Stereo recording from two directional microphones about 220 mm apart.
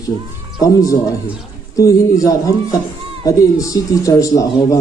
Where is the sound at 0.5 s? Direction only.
15° left (ahead or behind).